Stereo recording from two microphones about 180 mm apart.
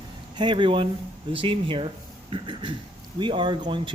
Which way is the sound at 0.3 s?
25° right (ahead or behind).